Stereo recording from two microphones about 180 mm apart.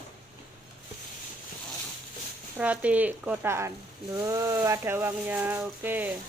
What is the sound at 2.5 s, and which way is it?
Speech, 5° right (ahead or behind).